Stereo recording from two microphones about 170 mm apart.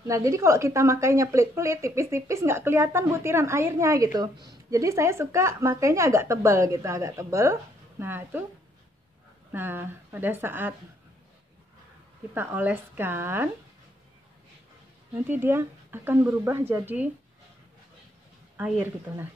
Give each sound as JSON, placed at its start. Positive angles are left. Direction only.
{"t": 0.0, "sound": "a woman's voice", "side_deg": -20}
{"t": 9.5, "sound": "a woman's voice", "side_deg": -10}
{"t": 12.4, "sound": "a woman's voice", "side_deg": -10}
{"t": 15.2, "sound": "a woman's voice", "side_deg": -10}
{"t": 18.6, "sound": "a woman's voice", "side_deg": -15}